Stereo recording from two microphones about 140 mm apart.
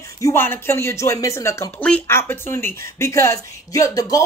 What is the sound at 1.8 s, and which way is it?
A woman's voice, 10° left (ahead or behind).